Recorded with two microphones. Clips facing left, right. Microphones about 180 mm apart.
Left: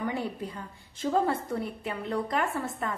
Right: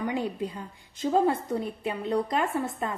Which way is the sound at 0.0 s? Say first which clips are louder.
Right 3 dB; 15° right (ahead or behind).